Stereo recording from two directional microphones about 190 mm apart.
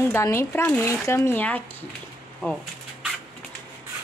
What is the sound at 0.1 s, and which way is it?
Speech, 15° left (ahead or behind).